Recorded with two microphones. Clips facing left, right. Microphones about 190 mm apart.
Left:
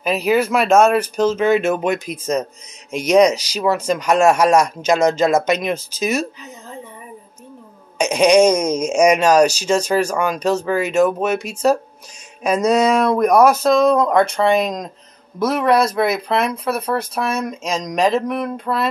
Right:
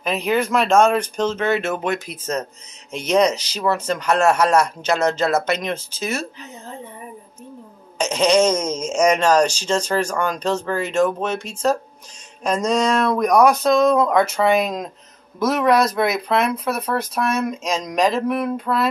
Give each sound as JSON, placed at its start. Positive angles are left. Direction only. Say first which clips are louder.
{"t": 0.0, "sound": "speech", "louder": "left 4 dB", "side_deg": 5}
{"t": 8.0, "sound": "speech", "louder": "left 4 dB", "side_deg": 15}